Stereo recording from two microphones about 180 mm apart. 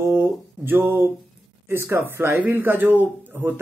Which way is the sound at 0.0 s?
15° right (ahead or behind).